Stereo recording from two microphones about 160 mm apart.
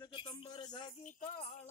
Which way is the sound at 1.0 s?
50° left (ahead or behind).